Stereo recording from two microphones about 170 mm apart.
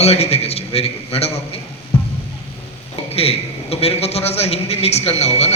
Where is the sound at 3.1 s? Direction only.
35° left (ahead or behind).